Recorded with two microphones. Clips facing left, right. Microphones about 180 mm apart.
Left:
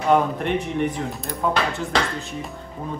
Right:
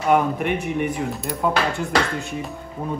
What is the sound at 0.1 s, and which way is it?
Speech, 10° right (ahead or behind).